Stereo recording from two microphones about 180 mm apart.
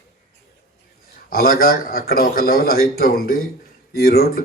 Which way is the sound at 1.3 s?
55° left (ahead or behind).